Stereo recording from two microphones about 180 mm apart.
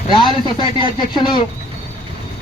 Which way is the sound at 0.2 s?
25° left (ahead or behind).